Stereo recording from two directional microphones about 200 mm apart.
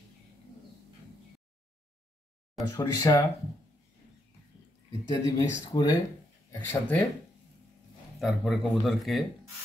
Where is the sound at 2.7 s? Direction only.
20° left (ahead or behind).